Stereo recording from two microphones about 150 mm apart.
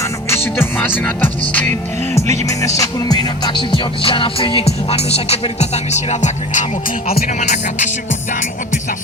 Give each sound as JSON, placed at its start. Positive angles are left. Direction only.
{"t": 0.0, "sound": "music", "side_deg": 15}